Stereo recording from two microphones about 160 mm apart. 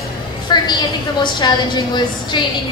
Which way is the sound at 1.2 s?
25° left (ahead or behind).